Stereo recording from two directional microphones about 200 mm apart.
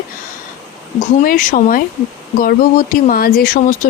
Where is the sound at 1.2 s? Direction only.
40° left (ahead or behind).